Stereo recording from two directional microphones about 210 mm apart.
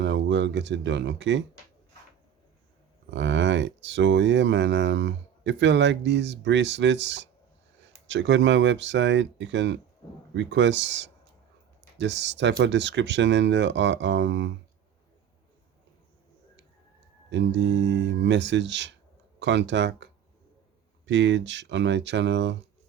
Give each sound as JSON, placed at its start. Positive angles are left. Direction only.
{"t": 0.0, "sound": "speech", "side_deg": -55}
{"t": 3.1, "sound": "speech", "side_deg": -60}
{"t": 17.2, "sound": "speech", "side_deg": -60}
{"t": 21.1, "sound": "speech", "side_deg": -60}